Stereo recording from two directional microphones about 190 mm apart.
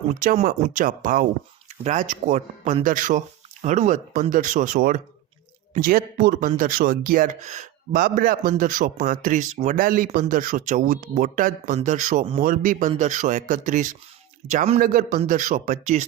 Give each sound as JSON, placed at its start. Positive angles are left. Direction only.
{"t": 0.1, "sound": "speech", "side_deg": -45}